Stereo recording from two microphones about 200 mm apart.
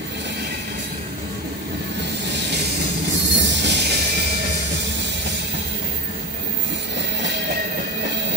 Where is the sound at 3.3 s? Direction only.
60° right (ahead or behind).